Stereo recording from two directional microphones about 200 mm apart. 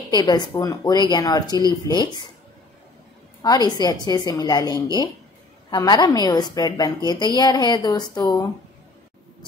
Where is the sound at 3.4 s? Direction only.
20° left (ahead or behind).